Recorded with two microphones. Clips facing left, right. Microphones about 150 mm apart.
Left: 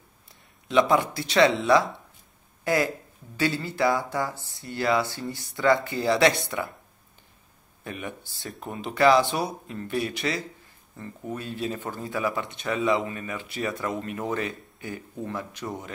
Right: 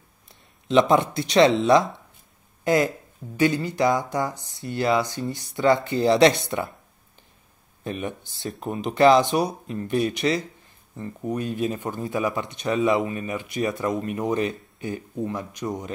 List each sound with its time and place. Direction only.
0.7 s speech: 25° right (ahead or behind)
7.8 s speech: 20° right (ahead or behind)